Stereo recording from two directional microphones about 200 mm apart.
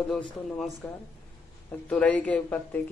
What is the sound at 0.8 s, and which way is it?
Speech, 5° left (ahead or behind).